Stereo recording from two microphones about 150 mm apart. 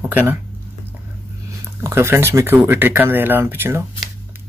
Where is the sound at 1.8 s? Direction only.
15° right (ahead or behind).